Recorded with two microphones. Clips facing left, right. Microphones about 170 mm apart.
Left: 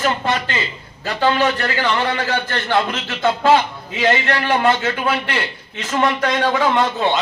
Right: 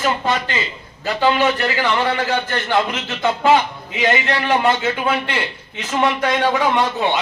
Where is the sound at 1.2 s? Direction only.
10° right (ahead or behind).